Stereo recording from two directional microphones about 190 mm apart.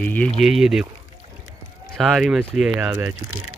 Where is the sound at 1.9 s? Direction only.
Centre (ahead or behind).